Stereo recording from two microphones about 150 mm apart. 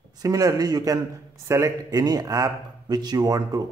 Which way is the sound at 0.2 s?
25° right (ahead or behind).